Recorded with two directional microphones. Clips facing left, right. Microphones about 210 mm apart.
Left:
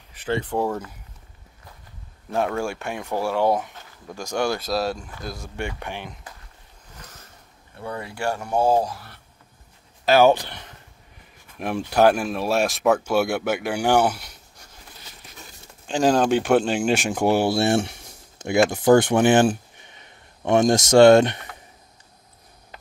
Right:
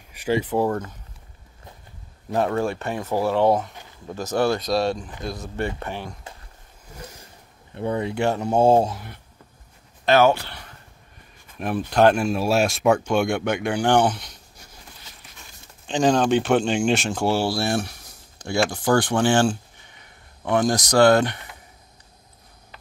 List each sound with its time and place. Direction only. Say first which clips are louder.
0.1 s speech: right 3 dB; 10° right (ahead or behind)
2.3 s speech: right 2 dB; centre (ahead or behind)
7.0 s a sound: right 6 dB; 10° right (ahead or behind)
7.8 s speech: right 6 dB; 20° right (ahead or behind)
10.0 s speech: left 1 dB; 10° left (ahead or behind)
11.6 s speech: even; 10° left (ahead or behind)
15.9 s speech: even; 5° left (ahead or behind); by 21.4 s 25° left (ahead or behind)